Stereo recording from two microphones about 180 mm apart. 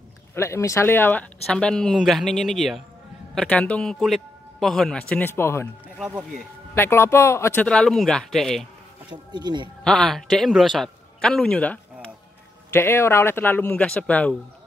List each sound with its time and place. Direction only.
0.3 s a man's voice: 15° left (ahead or behind)
5.9 s speech: 5° right (ahead or behind)
6.7 s speech: 15° left (ahead or behind)
9.1 s speech: 25° right (ahead or behind)
9.8 s a man's voice: centre (ahead or behind)